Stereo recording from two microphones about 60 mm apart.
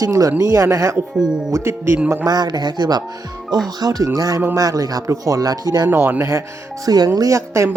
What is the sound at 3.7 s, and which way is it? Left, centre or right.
Speech, right.